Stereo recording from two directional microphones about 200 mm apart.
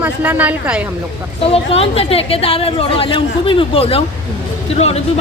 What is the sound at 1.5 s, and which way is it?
A woman's voice, 30° left (ahead or behind).